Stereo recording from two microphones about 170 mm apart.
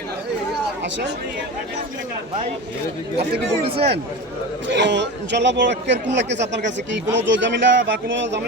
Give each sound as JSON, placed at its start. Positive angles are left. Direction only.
{"t": 3.7, "sound": "speech", "side_deg": -35}
{"t": 4.7, "sound": "speech", "side_deg": -90}